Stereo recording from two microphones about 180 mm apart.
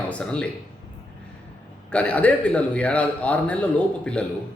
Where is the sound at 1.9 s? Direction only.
5° left (ahead or behind).